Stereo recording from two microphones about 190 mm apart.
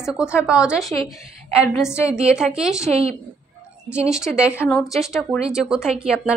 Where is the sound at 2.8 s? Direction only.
30° right (ahead or behind).